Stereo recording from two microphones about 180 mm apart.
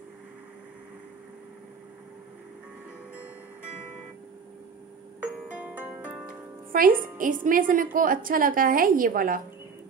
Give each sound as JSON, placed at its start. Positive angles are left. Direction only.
{"t": 5.2, "sound": "music", "side_deg": -5}
{"t": 6.7, "sound": "a woman's voice", "side_deg": -50}